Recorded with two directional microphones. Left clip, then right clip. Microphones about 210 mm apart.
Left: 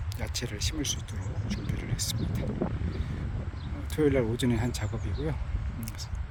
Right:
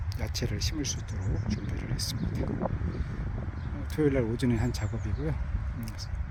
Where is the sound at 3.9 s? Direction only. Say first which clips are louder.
Left 1 dB; 10° left (ahead or behind).